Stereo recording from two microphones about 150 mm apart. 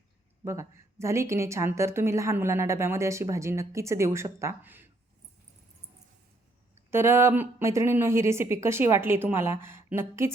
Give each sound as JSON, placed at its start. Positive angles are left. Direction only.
{"t": 0.4, "sound": "a woman's voice", "side_deg": -20}
{"t": 6.9, "sound": "speech", "side_deg": -15}